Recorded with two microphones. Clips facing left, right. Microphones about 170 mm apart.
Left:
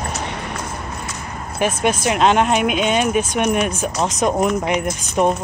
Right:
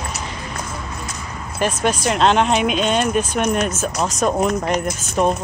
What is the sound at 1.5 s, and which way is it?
Speech, 10° left (ahead or behind).